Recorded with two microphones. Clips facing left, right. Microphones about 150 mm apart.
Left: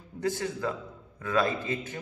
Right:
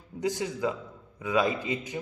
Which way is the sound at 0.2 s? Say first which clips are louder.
Right 1 dB; 15° right (ahead or behind).